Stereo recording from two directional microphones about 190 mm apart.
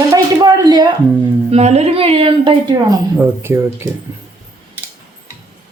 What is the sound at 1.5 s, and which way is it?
Speech, 35° right (ahead or behind).